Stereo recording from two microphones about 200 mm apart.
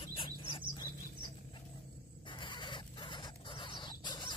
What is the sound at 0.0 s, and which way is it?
Chirp, 25° left (ahead or behind).